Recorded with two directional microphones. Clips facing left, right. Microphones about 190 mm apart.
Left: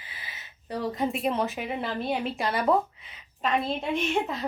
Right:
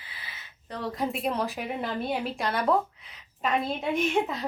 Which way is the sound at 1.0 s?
Centre (ahead or behind).